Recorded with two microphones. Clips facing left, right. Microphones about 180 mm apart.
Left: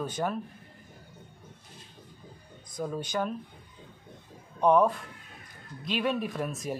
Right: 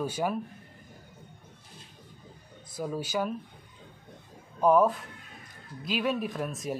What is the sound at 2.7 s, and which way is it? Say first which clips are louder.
Speech: even; 5° right (ahead or behind).